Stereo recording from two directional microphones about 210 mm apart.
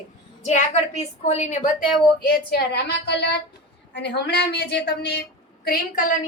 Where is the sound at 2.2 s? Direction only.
50° left (ahead or behind).